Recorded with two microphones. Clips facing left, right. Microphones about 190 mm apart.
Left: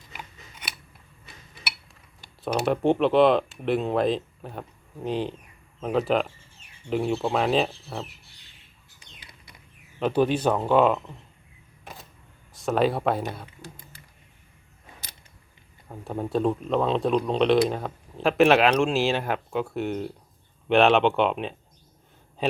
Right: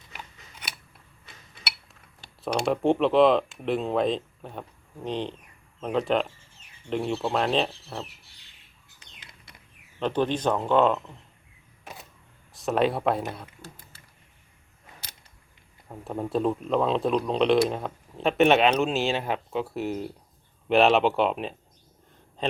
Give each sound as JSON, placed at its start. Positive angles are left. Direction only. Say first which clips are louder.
{"t": 2.4, "sound": "speech", "louder": "left 1 dB", "side_deg": 5}
{"t": 10.0, "sound": "speech", "louder": "left 3 dB", "side_deg": 10}
{"t": 12.5, "sound": "speech", "louder": "left 1 dB", "side_deg": 0}
{"t": 13.6, "sound": "a sound", "louder": "left 2 dB", "side_deg": 15}
{"t": 15.9, "sound": "speech", "louder": "left 1 dB", "side_deg": 0}